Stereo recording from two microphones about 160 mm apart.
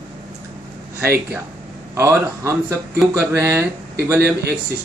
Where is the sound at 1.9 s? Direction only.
20° right (ahead or behind).